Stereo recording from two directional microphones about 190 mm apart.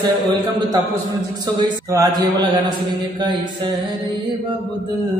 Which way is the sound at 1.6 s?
20° right (ahead or behind).